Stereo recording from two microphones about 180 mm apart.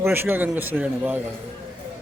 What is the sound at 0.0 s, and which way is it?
Speech, 10° right (ahead or behind).